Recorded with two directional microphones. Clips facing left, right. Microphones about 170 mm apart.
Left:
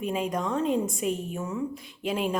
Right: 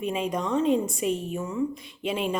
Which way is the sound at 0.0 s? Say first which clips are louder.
Right 1 dB; centre (ahead or behind).